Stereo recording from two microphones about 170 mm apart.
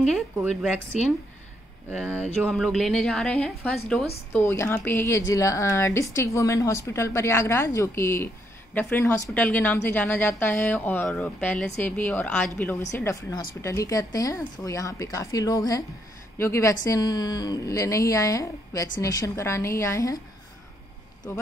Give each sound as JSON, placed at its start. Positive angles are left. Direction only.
{"t": 1.9, "sound": "speech", "side_deg": -10}
{"t": 2.4, "sound": "a woman's voice", "side_deg": 0}